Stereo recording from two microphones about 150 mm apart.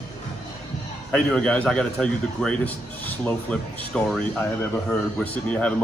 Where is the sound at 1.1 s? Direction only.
5° left (ahead or behind).